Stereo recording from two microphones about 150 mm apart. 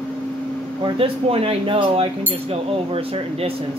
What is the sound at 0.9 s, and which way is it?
Speech, 40° right (ahead or behind).